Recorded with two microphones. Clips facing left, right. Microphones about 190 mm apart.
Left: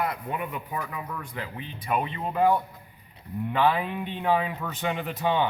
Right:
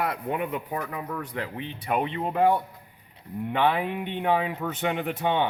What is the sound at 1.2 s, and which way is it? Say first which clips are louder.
Speech: right 4 dB; 65° right (ahead or behind).